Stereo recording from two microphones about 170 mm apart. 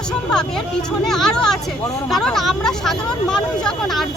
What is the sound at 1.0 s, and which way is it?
Speech, 5° left (ahead or behind).